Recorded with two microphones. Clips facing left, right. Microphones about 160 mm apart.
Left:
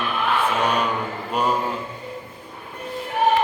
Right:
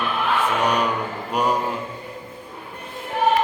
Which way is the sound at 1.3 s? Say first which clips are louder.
Right 1 dB; 15° right (ahead or behind).